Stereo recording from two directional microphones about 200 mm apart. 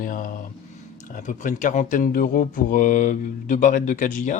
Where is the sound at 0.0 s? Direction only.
40° left (ahead or behind).